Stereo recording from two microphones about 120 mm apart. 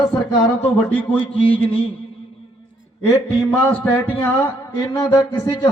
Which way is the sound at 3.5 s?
15° left (ahead or behind).